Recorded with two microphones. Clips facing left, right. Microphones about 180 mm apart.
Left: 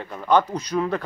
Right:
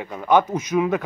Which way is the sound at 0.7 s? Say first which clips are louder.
Right 3 dB; 5° right (ahead or behind).